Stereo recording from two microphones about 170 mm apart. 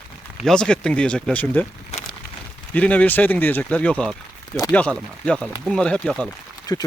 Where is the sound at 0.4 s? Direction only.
5° left (ahead or behind).